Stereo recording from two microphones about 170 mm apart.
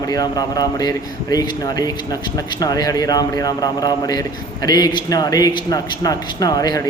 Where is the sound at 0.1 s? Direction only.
20° left (ahead or behind).